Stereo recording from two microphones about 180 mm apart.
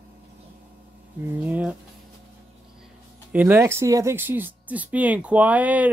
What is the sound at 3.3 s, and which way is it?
Speech, 10° right (ahead or behind).